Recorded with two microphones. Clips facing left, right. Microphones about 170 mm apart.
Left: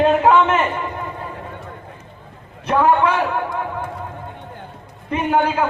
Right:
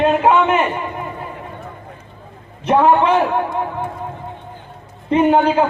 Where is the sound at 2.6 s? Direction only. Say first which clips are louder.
Right 3 dB; 20° right (ahead or behind).